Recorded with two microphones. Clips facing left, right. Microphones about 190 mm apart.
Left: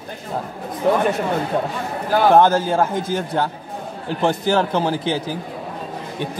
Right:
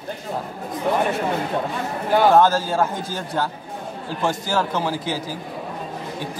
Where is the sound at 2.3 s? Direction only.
20° left (ahead or behind).